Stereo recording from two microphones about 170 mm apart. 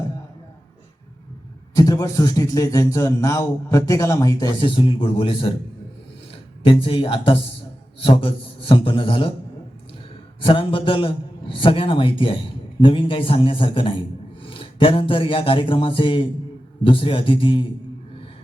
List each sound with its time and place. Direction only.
1.7 s a man's voice: 20° left (ahead or behind)
6.7 s a man's voice: 30° left (ahead or behind)
10.4 s a man's voice: 30° left (ahead or behind)